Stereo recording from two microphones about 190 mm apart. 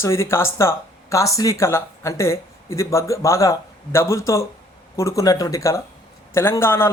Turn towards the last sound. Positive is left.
turn(degrees=10)  # may be behind; listen again after turning